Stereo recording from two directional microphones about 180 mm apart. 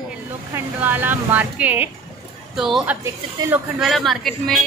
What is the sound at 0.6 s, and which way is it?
Speech, 10° right (ahead or behind).